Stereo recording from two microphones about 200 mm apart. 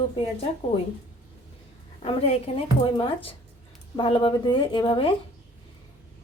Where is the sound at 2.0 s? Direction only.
30° left (ahead or behind).